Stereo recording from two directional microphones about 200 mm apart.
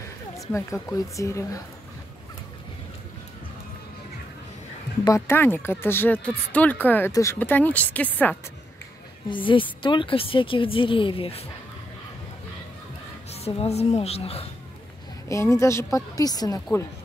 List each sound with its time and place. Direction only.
0.5 s speech: 15° left (ahead or behind)
5.0 s speech: 15° left (ahead or behind)
9.3 s a woman's voice: 25° left (ahead or behind)
13.3 s speech: 30° left (ahead or behind)
15.2 s speech: 15° left (ahead or behind)